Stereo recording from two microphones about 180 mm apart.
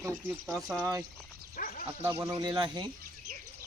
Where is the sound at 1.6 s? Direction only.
50° left (ahead or behind).